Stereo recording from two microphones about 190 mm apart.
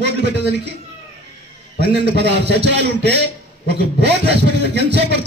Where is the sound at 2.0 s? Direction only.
65° right (ahead or behind).